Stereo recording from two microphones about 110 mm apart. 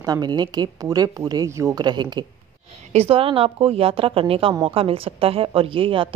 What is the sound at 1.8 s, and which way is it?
Speech, 40° right (ahead or behind).